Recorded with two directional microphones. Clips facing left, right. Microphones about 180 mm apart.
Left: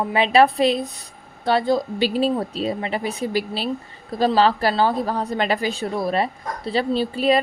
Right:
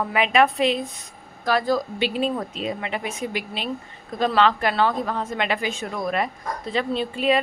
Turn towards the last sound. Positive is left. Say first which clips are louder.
# left 3 dB
turn(degrees=35)  # may be behind; listen again after turning